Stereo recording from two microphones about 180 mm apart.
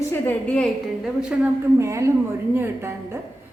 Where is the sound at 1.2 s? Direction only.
10° right (ahead or behind).